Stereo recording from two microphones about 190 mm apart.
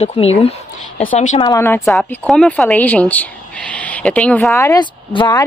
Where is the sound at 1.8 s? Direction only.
5° left (ahead or behind).